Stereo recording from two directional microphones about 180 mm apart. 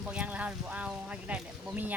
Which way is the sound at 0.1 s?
5° right (ahead or behind).